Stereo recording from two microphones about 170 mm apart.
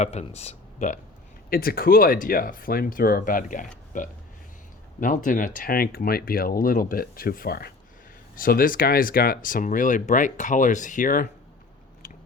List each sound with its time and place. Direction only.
0.0 s speech: 40° left (ahead or behind)
1.5 s speech: 60° left (ahead or behind)
12.0 s biting: 50° left (ahead or behind)